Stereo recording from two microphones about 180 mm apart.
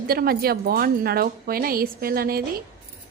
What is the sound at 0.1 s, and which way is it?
A woman's voice, 55° right (ahead or behind).